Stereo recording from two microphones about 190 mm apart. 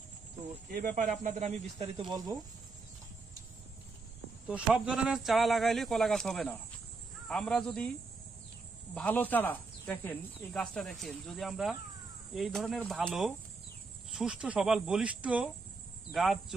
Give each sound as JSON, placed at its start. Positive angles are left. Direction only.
{"t": 0.7, "sound": "speech", "side_deg": -50}
{"t": 4.5, "sound": "speech", "side_deg": -5}
{"t": 8.9, "sound": "speech", "side_deg": 10}